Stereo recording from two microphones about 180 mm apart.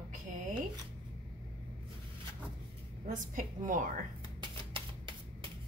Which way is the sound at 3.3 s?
50° right (ahead or behind).